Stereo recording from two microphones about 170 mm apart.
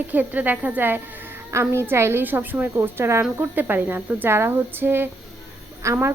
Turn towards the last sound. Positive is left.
turn(degrees=-15)  # may be behind; listen again after turning